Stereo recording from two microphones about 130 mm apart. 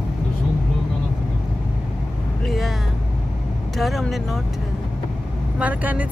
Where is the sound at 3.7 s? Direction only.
Centre (ahead or behind).